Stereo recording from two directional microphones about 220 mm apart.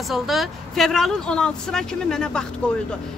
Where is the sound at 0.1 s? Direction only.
Centre (ahead or behind).